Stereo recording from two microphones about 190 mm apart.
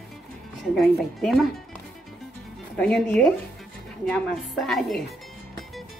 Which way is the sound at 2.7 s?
5° left (ahead or behind).